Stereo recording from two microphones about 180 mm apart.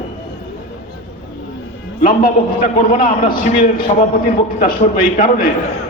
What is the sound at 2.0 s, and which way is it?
A man's voice, 55° left (ahead or behind).